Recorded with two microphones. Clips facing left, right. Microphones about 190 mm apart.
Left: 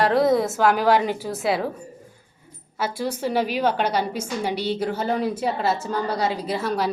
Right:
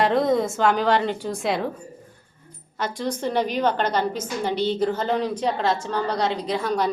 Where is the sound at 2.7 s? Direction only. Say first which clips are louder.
Left 1 dB; 5° left (ahead or behind).